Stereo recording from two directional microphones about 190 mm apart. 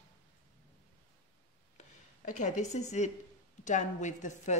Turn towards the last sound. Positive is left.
turn(degrees=40)  # may be behind; listen again after turning